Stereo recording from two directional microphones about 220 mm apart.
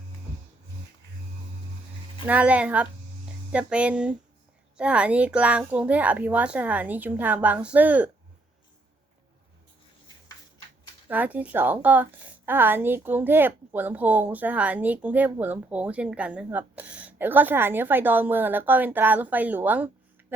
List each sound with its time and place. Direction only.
2.2 s a woman's voice: 5° right (ahead or behind)
11.1 s a woman's voice: 5° right (ahead or behind)